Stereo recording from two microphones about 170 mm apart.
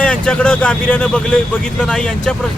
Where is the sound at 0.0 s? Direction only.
5° left (ahead or behind).